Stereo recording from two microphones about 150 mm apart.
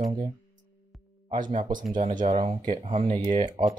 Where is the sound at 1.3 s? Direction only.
60° right (ahead or behind).